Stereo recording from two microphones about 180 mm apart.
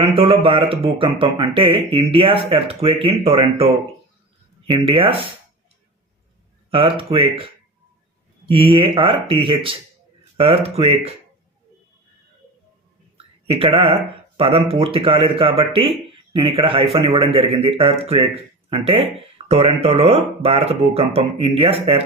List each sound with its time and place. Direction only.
0.0 s speech: 30° right (ahead or behind)
6.7 s speech: 30° right (ahead or behind)
13.1 s a sound: 35° right (ahead or behind)
14.3 s speech: 30° right (ahead or behind)